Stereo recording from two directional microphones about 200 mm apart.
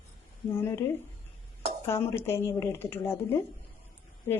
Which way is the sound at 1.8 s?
10° left (ahead or behind).